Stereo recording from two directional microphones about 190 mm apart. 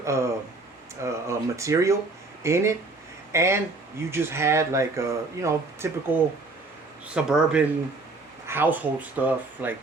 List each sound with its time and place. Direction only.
0.0 s speech: 15° right (ahead or behind)
1.0 s a sound: 15° right (ahead or behind)
2.4 s speech: 15° right (ahead or behind)
7.1 s speech: 5° right (ahead or behind)